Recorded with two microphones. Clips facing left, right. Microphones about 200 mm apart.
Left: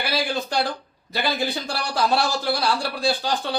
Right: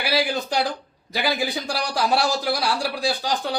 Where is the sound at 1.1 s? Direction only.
10° right (ahead or behind).